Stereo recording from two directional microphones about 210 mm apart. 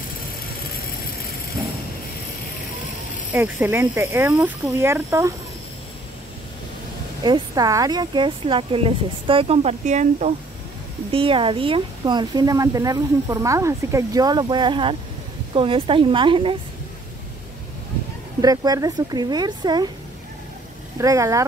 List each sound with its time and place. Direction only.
3.3 s speech: 10° right (ahead or behind)
7.2 s speech: 20° right (ahead or behind)
18.4 s speech: 20° right (ahead or behind)
21.0 s speech: 15° right (ahead or behind)